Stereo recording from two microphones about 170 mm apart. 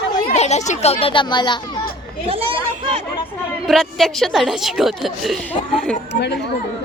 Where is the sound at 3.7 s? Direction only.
Centre (ahead or behind).